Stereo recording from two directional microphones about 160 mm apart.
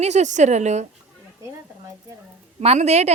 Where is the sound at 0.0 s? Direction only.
45° right (ahead or behind).